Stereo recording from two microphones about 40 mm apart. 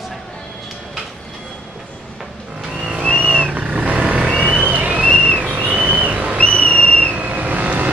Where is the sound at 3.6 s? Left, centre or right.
Right.